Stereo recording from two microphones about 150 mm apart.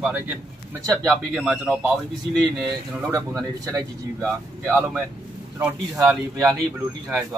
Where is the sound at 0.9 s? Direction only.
5° left (ahead or behind).